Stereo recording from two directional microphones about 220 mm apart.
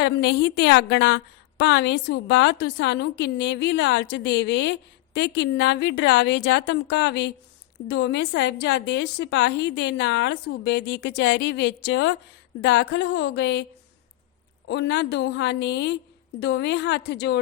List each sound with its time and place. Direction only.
0.0 s a woman's voice: 50° left (ahead or behind)
14.7 s a woman's voice: 50° left (ahead or behind)